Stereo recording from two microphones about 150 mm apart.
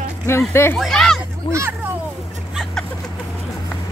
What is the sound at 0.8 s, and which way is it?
Speech, 5° left (ahead or behind).